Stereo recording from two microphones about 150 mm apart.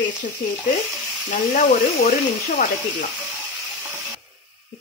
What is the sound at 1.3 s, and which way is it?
Speech, 60° left (ahead or behind).